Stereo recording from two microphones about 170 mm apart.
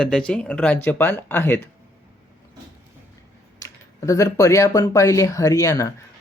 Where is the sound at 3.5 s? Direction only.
20° left (ahead or behind).